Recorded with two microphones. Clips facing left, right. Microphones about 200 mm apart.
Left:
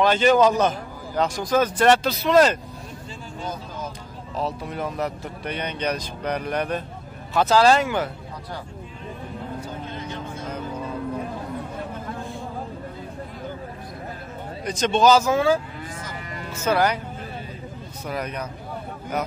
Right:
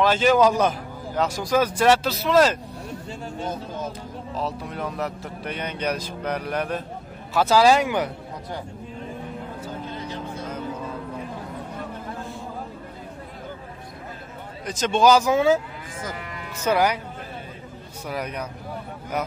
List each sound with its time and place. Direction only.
0.0 s speech: 5° right (ahead or behind)
3.3 s vehicle: 25° right (ahead or behind)
4.4 s speech: centre (ahead or behind); by 8.1 s 15° right (ahead or behind)
14.6 s speech: 5° right (ahead or behind)
16.6 s speech: 10° right (ahead or behind)
18.0 s speech: 10° right (ahead or behind)